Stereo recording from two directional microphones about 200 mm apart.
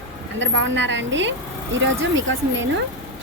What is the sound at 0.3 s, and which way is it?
A woman's voice, 65° right (ahead or behind).